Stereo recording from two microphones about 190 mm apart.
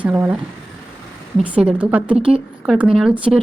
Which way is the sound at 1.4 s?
5° right (ahead or behind).